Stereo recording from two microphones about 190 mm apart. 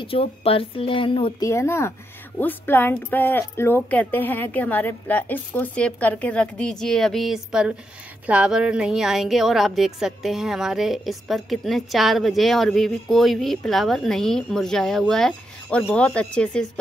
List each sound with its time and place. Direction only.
0.0 s speech: 30° left (ahead or behind)
1.5 s a woman's voice: 15° left (ahead or behind)